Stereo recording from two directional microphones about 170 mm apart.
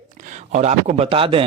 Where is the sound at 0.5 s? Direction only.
40° right (ahead or behind).